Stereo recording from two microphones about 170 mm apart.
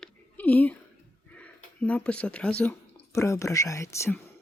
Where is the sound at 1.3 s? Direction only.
5° left (ahead or behind).